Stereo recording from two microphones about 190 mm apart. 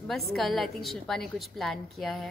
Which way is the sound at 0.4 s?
Centre (ahead or behind).